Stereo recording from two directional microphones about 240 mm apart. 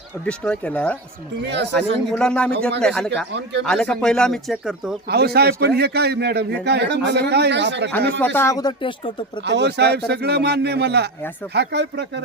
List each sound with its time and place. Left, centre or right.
0.3 s speech: centre
5.0 s a man's voice: right
8.2 s speech: centre
9.4 s a man's voice: right